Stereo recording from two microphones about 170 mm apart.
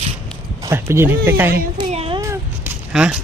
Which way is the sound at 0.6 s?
15° right (ahead or behind).